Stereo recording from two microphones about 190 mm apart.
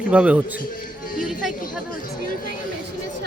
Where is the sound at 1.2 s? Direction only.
Centre (ahead or behind).